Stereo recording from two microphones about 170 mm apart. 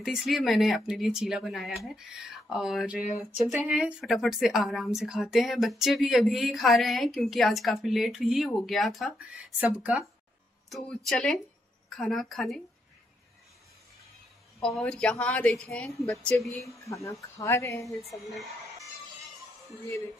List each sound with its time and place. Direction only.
0.0 s a woman's voice: centre (ahead or behind)
11.1 s a woman's voice: 5° left (ahead or behind)
14.6 s a woman's voice: centre (ahead or behind)
16.6 s speech: 20° left (ahead or behind)
17.8 s a woman's voice: centre (ahead or behind)